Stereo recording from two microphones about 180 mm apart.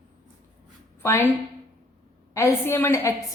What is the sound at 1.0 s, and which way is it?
Speech, 15° left (ahead or behind).